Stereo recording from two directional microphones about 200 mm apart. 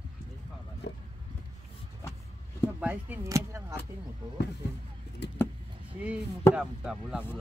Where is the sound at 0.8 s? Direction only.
60° left (ahead or behind).